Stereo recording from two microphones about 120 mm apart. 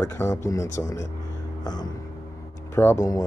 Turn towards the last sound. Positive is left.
turn(degrees=25)  # may be behind; listen again after turning